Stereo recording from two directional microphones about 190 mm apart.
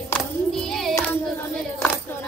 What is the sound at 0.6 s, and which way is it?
Child singing, centre (ahead or behind).